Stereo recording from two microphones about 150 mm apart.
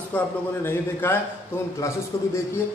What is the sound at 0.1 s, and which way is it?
A man's voice, 10° left (ahead or behind).